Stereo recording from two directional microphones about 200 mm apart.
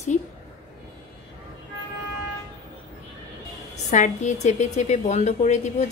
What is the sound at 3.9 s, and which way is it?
A woman's voice, 35° left (ahead or behind).